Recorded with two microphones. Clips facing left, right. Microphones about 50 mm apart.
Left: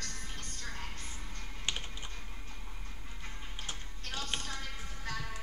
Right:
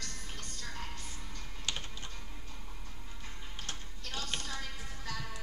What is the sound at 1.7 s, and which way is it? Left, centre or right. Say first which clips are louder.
Computer keyboard: left 1 dB; left.